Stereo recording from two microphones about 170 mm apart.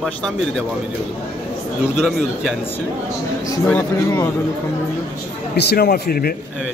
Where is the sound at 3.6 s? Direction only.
15° left (ahead or behind).